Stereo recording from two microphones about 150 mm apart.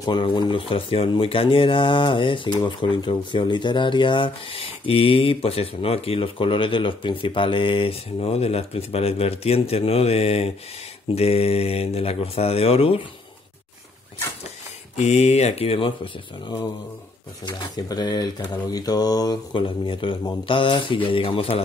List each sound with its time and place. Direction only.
0.0 s speech: 30° left (ahead or behind)
15.0 s speech: 45° left (ahead or behind)